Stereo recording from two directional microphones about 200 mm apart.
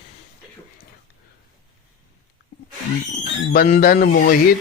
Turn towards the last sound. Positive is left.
turn(degrees=45)  # may be behind; listen again after turning